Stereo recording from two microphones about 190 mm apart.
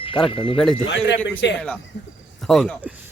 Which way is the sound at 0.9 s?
65° left (ahead or behind).